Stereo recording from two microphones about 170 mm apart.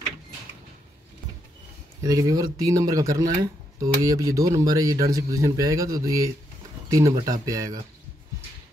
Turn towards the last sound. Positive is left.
turn(degrees=-20)  # may be behind; listen again after turning